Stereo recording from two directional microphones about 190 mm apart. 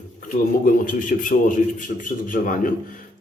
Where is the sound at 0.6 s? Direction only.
45° left (ahead or behind).